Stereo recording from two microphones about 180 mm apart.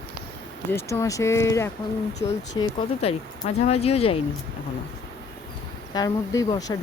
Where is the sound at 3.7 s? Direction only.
35° left (ahead or behind).